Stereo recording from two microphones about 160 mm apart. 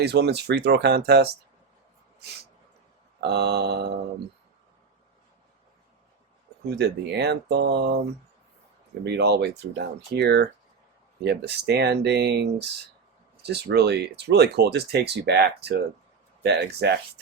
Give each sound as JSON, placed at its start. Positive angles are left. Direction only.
{"t": 0.0, "sound": "speech", "side_deg": -90}
{"t": 3.2, "sound": "speech", "side_deg": -90}
{"t": 6.7, "sound": "speech", "side_deg": -90}
{"t": 9.0, "sound": "speech", "side_deg": -90}